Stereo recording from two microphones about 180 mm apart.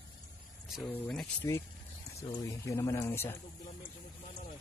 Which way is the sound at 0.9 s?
5° left (ahead or behind).